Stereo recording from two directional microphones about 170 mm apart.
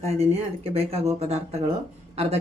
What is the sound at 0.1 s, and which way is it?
Speech, 35° right (ahead or behind).